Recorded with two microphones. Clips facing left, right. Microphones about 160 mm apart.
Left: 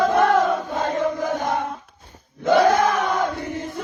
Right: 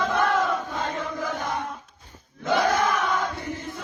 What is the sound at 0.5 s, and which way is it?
Chant, 45° left (ahead or behind).